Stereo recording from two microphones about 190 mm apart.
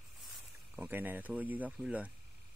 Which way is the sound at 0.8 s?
10° right (ahead or behind).